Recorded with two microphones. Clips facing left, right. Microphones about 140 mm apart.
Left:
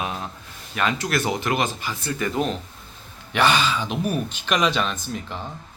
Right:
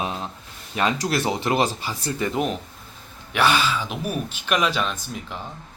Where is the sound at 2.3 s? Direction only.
15° right (ahead or behind).